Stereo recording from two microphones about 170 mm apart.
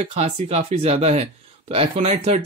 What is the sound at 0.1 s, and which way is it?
Speech, 40° right (ahead or behind).